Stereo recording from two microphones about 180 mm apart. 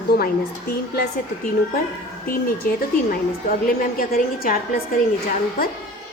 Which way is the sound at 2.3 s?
55° left (ahead or behind).